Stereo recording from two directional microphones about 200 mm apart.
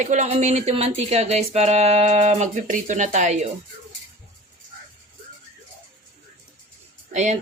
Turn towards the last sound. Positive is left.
turn(degrees=-35)  # may be behind; listen again after turning